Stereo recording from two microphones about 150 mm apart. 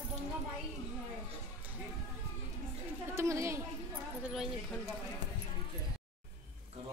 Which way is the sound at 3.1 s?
20° right (ahead or behind).